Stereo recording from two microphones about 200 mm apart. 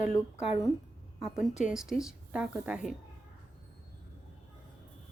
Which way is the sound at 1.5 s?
35° left (ahead or behind).